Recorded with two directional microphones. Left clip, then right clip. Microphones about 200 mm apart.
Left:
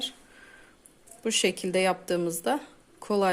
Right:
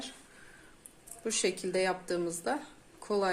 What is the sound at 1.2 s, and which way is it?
A woman's voice, 40° left (ahead or behind).